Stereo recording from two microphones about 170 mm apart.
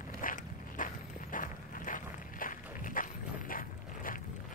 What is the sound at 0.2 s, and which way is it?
Walk, 50° left (ahead or behind).